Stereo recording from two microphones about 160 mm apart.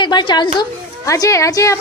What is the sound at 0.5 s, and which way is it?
A child's voice, 20° left (ahead or behind).